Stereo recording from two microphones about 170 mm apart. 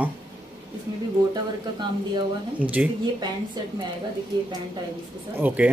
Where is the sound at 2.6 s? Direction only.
10° right (ahead or behind).